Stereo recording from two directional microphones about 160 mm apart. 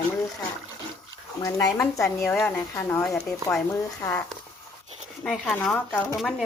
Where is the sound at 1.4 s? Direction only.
20° left (ahead or behind).